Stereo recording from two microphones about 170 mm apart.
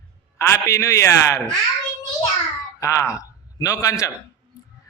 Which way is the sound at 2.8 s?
15° left (ahead or behind).